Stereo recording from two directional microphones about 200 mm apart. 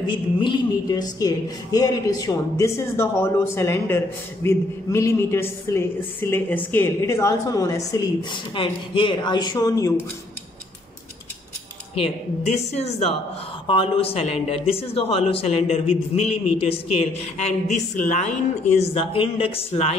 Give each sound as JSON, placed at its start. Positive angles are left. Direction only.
{"t": 0.0, "sound": "speech", "side_deg": 25}
{"t": 13.7, "sound": "speech", "side_deg": 25}